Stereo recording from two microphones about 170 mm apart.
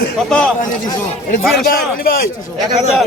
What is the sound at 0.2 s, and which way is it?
Speech, 5° left (ahead or behind).